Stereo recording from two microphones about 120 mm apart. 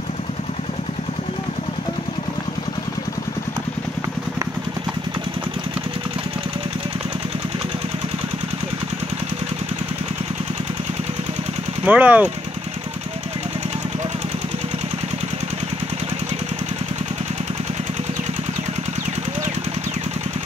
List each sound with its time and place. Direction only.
11.8 s speech: 10° right (ahead or behind)